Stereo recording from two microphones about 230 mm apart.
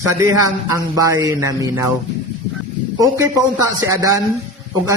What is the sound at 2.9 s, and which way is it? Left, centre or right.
A man's voice, centre.